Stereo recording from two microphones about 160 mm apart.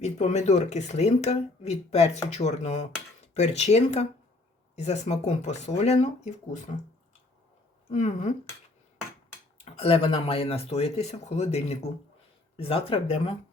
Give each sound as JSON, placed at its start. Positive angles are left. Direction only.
{"t": 0.0, "sound": "speech", "side_deg": 45}
{"t": 7.9, "sound": "speech", "side_deg": 50}
{"t": 9.7, "sound": "speech", "side_deg": 40}